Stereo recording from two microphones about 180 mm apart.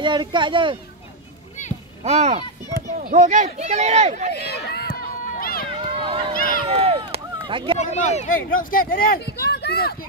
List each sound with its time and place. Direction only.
0.0 s speech: 25° right (ahead or behind)
2.0 s speech: 35° right (ahead or behind)
4.4 s a sound: 65° left (ahead or behind)
5.2 s run: 50° left (ahead or behind)
5.9 s run: 30° right (ahead or behind)
6.3 s speech: 50° left (ahead or behind)
6.7 s a sound: 30° right (ahead or behind)
7.8 s speech: 40° left (ahead or behind); by 9.9 s 60° left (ahead or behind)